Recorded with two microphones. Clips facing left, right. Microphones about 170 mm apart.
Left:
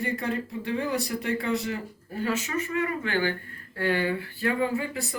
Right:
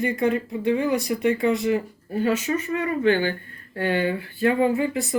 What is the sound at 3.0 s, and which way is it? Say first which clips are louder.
Speech: right 7 dB; 20° right (ahead or behind).